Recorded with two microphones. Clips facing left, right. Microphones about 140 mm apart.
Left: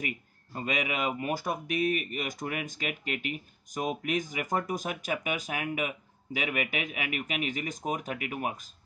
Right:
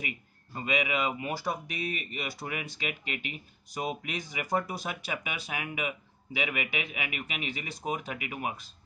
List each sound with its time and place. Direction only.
0.6 s speech: 45° left (ahead or behind)